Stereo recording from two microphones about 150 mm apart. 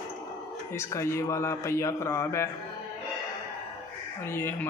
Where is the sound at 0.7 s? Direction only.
20° left (ahead or behind).